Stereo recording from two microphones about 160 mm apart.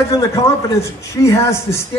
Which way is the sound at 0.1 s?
20° left (ahead or behind).